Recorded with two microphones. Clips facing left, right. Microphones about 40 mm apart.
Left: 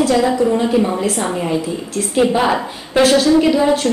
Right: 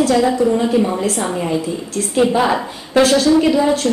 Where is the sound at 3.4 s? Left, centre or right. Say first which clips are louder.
Left 1 dB; left.